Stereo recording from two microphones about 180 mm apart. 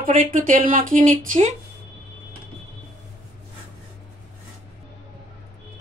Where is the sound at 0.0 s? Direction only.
50° right (ahead or behind).